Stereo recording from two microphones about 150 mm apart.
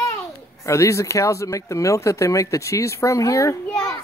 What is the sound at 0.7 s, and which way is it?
Speech, 20° left (ahead or behind).